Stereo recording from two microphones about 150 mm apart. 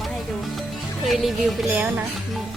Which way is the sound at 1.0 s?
Centre (ahead or behind).